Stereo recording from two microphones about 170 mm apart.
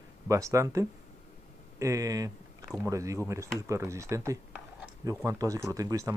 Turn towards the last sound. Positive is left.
turn(degrees=-20)  # may be behind; listen again after turning